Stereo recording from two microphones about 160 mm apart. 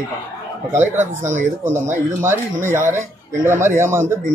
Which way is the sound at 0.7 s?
15° right (ahead or behind).